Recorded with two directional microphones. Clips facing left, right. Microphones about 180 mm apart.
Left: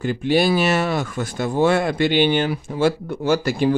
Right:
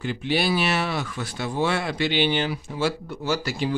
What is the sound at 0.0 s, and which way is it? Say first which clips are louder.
Speech: left 6 dB; 45° left (ahead or behind).